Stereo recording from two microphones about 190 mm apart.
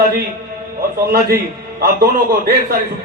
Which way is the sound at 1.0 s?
55° right (ahead or behind).